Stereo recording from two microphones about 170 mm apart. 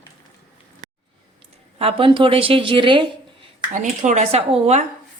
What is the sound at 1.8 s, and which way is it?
Speech, 35° right (ahead or behind).